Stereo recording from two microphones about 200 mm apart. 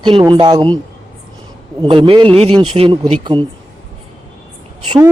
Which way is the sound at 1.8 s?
25° right (ahead or behind).